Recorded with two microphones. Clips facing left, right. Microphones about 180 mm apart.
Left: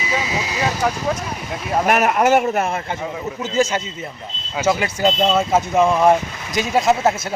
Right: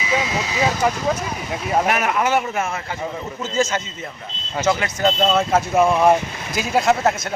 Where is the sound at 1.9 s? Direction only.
45° left (ahead or behind).